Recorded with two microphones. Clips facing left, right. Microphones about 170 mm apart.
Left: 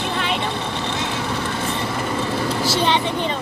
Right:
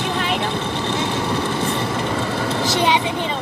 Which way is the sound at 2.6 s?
15° right (ahead or behind).